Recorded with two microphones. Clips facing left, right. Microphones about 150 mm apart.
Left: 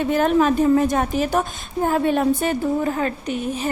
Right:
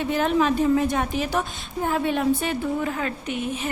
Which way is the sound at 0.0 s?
45° left (ahead or behind).